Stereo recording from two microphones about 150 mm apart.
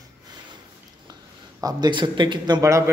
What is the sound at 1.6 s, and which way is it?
A man's voice, 25° right (ahead or behind).